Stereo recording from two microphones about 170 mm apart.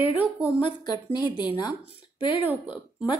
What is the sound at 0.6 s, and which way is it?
A woman's voice, 25° left (ahead or behind).